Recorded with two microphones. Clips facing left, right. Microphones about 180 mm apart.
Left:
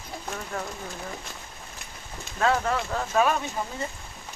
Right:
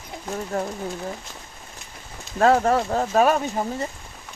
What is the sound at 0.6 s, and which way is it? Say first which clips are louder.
Speech: right 8 dB; 40° right (ahead or behind).